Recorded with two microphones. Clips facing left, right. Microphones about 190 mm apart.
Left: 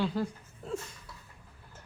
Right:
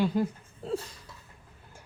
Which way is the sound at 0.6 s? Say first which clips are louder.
Right 4 dB; 35° right (ahead or behind).